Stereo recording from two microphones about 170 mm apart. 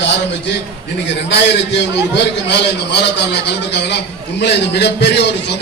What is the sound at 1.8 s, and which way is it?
A man's voice, 90° left.